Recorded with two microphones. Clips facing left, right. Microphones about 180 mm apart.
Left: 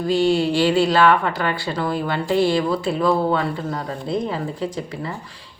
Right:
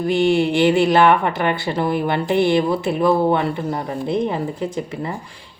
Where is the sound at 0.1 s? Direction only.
20° right (ahead or behind).